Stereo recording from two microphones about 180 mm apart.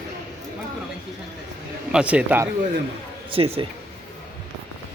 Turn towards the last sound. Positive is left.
turn(degrees=-30)  # may be behind; listen again after turning